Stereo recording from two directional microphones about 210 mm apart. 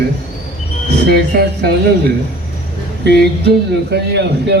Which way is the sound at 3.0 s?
50° right (ahead or behind).